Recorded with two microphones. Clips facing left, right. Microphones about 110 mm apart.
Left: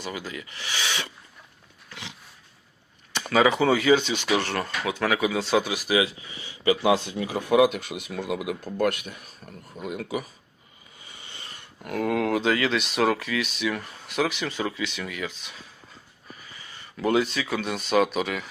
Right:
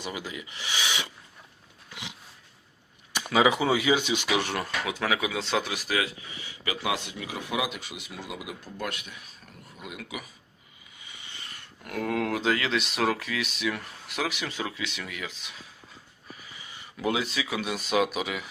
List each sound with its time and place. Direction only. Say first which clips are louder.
0.0 s speech: left 2 dB; 15° right (ahead or behind)
1.9 s dog: left 1 dB; 15° right (ahead or behind)
3.1 s speech: left 2 dB; 10° right (ahead or behind); by 6.0 s 5° left (ahead or behind)
6.7 s speech: left 9 dB; 30° left (ahead or behind)
11.0 s a sound: left 1 dB; 40° left (ahead or behind)
11.8 s speech: left 4 dB; centre (ahead or behind)